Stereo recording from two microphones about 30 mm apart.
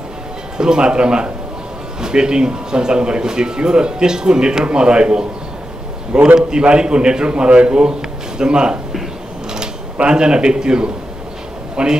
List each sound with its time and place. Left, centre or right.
0.6 s a man's voice: right
6.3 s a man's voice: right
10.0 s a man's voice: right